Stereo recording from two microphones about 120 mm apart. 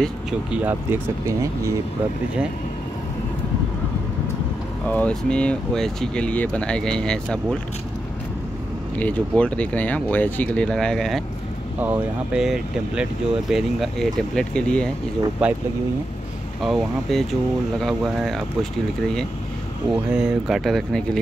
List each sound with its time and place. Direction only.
0.3 s speech: 10° right (ahead or behind); by 1.7 s 25° right (ahead or behind)
4.8 s speech: 10° left (ahead or behind)
9.0 s speech: 10° left (ahead or behind)
11.8 s speech: 10° right (ahead or behind); by 14.9 s 10° left (ahead or behind)
15.4 s speech: 10° right (ahead or behind)
16.6 s speech: centre (ahead or behind)
20.2 s speech: 5° right (ahead or behind)